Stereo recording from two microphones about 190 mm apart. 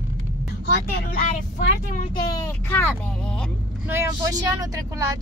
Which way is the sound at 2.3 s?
15° left (ahead or behind).